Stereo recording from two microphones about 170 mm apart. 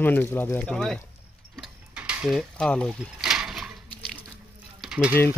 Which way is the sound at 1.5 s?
5° right (ahead or behind).